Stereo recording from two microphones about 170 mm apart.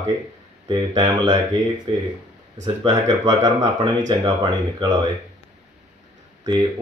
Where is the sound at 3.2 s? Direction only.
25° right (ahead or behind).